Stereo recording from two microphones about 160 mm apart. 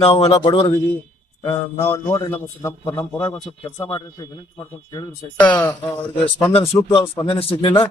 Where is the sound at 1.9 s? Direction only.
15° left (ahead or behind).